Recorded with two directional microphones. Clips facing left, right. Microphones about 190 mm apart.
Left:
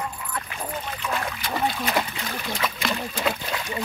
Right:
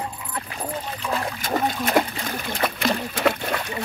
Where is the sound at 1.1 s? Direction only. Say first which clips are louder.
Right 4 dB; 45° right (ahead or behind).